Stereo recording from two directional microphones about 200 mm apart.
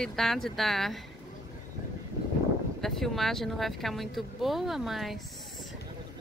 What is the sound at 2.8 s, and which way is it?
Speech, centre (ahead or behind).